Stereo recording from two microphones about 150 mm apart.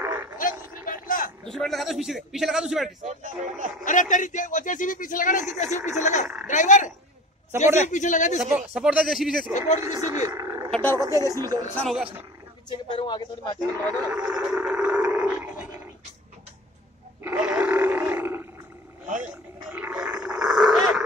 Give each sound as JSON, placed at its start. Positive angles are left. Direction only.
{"t": 0.0, "sound": "a sound", "side_deg": -15}
{"t": 0.4, "sound": "vehicle", "side_deg": 65}
{"t": 1.4, "sound": "a man's voice", "side_deg": 0}
{"t": 3.1, "sound": "speech", "side_deg": -55}
{"t": 3.8, "sound": "a man's voice", "side_deg": 60}
{"t": 8.4, "sound": "a man's voice", "side_deg": -5}
{"t": 10.2, "sound": "a sound", "side_deg": -20}
{"t": 10.7, "sound": "roaring cats", "side_deg": 10}
{"t": 11.0, "sound": "speech", "side_deg": -25}
{"t": 11.7, "sound": "a man's voice", "side_deg": 5}
{"t": 12.6, "sound": "speech", "side_deg": 30}
{"t": 14.1, "sound": "a sound", "side_deg": -5}
{"t": 17.2, "sound": "roar", "side_deg": -10}
{"t": 19.7, "sound": "a sound", "side_deg": -10}